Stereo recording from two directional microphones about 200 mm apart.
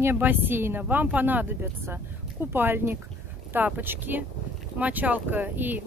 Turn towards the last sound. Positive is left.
turn(degrees=-10)  # may be behind; listen again after turning